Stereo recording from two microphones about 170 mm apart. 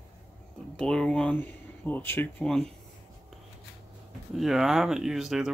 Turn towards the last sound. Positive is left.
turn(degrees=0)  # may be behind; listen again after turning